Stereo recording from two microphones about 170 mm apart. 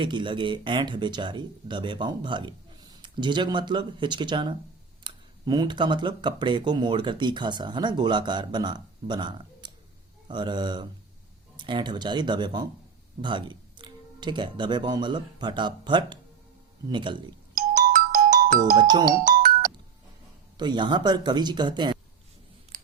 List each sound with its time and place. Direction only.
0.0 s speech: 30° right (ahead or behind)
17.7 s ringtone: 55° right (ahead or behind)
18.8 s speech: 25° right (ahead or behind)
19.0 s music: 55° right (ahead or behind)
20.6 s speech: 25° right (ahead or behind)